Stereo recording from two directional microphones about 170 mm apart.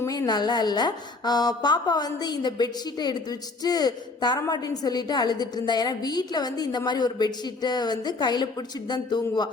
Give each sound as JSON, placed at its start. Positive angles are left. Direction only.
{"t": 0.0, "sound": "a woman's voice", "side_deg": 20}